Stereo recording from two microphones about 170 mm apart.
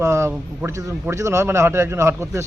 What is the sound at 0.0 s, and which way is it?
A man's voice, 15° right (ahead or behind).